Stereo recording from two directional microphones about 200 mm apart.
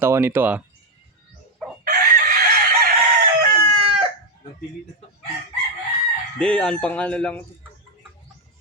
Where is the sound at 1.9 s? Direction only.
45° right (ahead or behind).